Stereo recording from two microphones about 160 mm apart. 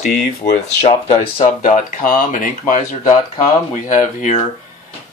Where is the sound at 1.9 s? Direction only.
55° left (ahead or behind).